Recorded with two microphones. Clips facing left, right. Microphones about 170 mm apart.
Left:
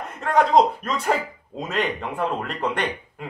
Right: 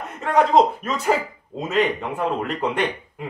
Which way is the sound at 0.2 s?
5° right (ahead or behind).